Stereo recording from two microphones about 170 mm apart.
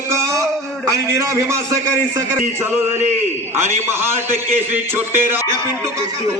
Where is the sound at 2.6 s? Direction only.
15° right (ahead or behind).